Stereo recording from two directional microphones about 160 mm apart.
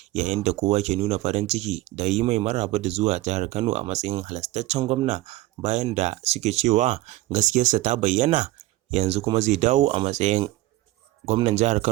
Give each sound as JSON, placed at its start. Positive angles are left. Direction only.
{"t": 0.1, "sound": "speech", "side_deg": -45}